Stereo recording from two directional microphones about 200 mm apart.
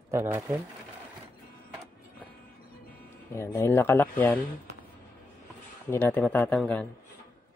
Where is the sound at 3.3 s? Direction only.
15° left (ahead or behind).